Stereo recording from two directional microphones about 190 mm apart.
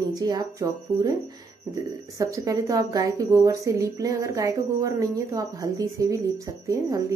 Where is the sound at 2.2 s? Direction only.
15° right (ahead or behind).